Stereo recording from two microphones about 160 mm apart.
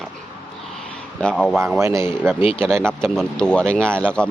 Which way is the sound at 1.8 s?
15° right (ahead or behind).